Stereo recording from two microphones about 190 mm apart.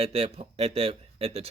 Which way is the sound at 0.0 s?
30° right (ahead or behind).